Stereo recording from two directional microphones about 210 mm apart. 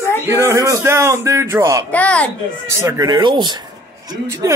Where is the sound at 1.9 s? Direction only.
5° left (ahead or behind).